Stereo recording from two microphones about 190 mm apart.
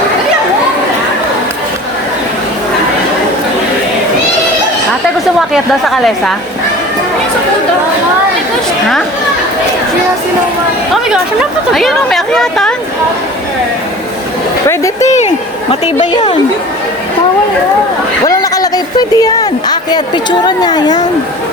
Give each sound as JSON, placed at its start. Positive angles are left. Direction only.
{"t": 5.8, "sound": "speech", "side_deg": 0}
{"t": 11.7, "sound": "speech", "side_deg": 0}
{"t": 15.0, "sound": "a sound", "side_deg": 35}
{"t": 15.7, "sound": "a woman's voice", "side_deg": 30}
{"t": 18.3, "sound": "a woman's voice", "side_deg": 20}